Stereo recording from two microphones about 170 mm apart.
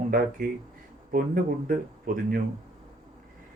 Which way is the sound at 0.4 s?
55° right (ahead or behind).